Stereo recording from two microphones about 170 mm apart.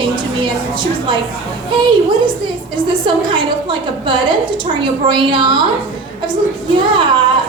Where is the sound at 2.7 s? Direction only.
30° right (ahead or behind).